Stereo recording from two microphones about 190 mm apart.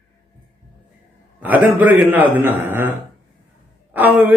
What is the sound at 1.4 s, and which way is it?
Speech, 10° right (ahead or behind).